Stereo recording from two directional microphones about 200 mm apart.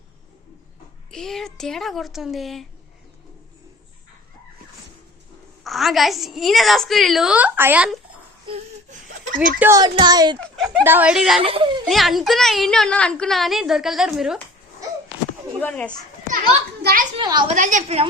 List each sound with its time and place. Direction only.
1.1 s a woman's voice: centre (ahead or behind)
5.6 s a woman's voice: centre (ahead or behind)
8.4 s whimper: 35° right (ahead or behind)
9.6 s a child's voice: 15° right (ahead or behind)
10.8 s a woman's voice: 10° right (ahead or behind)
11.3 s a child's voice: 30° right (ahead or behind)
11.9 s a woman's voice: centre (ahead or behind)
15.6 s speech: 10° left (ahead or behind)
16.8 s a woman's voice: 45° right (ahead or behind)
17.2 s a woman's voice: 20° right (ahead or behind)
17.5 s a woman's voice: 40° right (ahead or behind)